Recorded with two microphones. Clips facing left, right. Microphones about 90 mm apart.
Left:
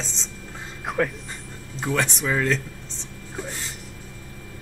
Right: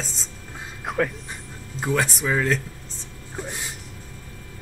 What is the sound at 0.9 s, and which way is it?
Speech, centre (ahead or behind).